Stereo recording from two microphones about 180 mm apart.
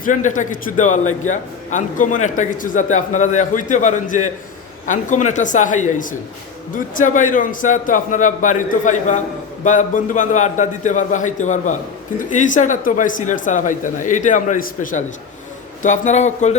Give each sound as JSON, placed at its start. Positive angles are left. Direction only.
{"t": 0.0, "sound": "a man's voice", "side_deg": 45}